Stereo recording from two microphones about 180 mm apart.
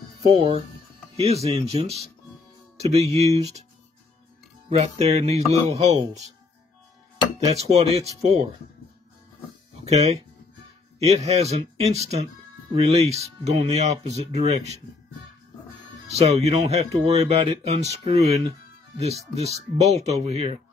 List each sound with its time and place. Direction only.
0.2 s speech: 30° right (ahead or behind)
4.6 s speech: 35° right (ahead or behind)
7.4 s speech: 35° right (ahead or behind)
9.8 s speech: 40° right (ahead or behind)
16.1 s speech: 35° right (ahead or behind)